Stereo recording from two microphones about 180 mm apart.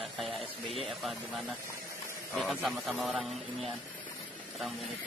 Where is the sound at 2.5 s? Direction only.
Centre (ahead or behind).